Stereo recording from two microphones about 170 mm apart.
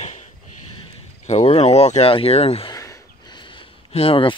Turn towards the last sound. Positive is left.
turn(degrees=35)  # may be behind; listen again after turning